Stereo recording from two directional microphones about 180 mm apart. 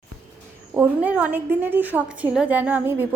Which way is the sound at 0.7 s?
10° right (ahead or behind).